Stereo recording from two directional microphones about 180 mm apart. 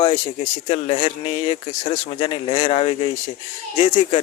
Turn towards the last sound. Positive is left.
turn(degrees=35)  # may be behind; listen again after turning